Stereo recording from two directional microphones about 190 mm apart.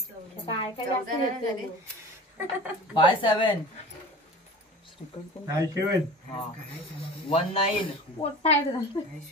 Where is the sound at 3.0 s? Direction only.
25° left (ahead or behind).